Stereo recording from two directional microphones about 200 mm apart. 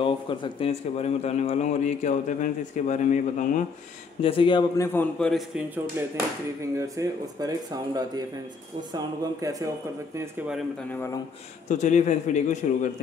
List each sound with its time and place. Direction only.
0.0 s a man's voice: 25° left (ahead or behind)
4.2 s a man's voice: 25° left (ahead or behind)
4.8 s a man's voice: 10° left (ahead or behind)
5.9 s speech: 15° right (ahead or behind)
10.9 s a man's voice: 10° left (ahead or behind)
11.7 s a man's voice: 35° left (ahead or behind)